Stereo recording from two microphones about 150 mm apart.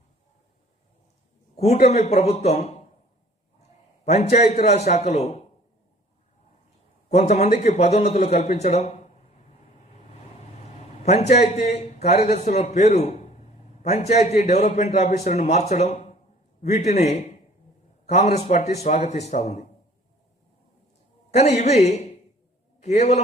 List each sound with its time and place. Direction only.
1.5 s a man's voice: 45° left (ahead or behind)
4.0 s a man's voice: 50° left (ahead or behind)
7.1 s a man's voice: 50° left (ahead or behind)
11.0 s a man's voice: 45° left (ahead or behind)
21.2 s a man's voice: 50° left (ahead or behind)